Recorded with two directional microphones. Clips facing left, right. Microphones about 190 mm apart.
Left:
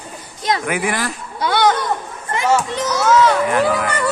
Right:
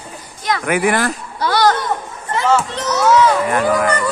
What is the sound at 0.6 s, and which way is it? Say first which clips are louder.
Speech: right 5 dB; 55° right (ahead or behind).